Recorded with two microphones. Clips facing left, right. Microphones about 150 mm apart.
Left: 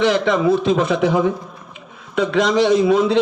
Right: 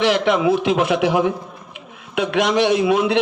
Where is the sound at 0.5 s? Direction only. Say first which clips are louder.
Left 1 dB; 70° right (ahead or behind).